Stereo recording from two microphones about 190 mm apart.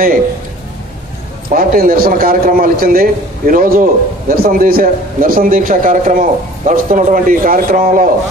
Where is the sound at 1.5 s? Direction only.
50° right (ahead or behind).